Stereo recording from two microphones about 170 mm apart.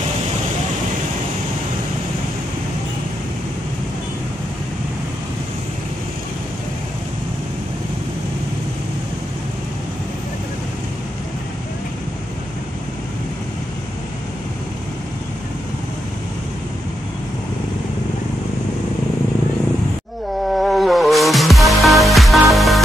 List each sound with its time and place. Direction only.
20.5 s music: centre (ahead or behind)